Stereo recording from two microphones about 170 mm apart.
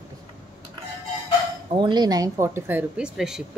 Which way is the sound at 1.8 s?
25° right (ahead or behind).